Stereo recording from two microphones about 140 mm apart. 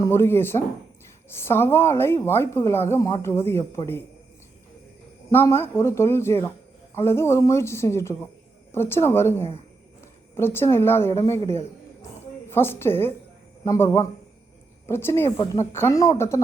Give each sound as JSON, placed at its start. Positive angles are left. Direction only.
{"t": 0.0, "sound": "speech", "side_deg": 15}
{"t": 5.3, "sound": "speech", "side_deg": 15}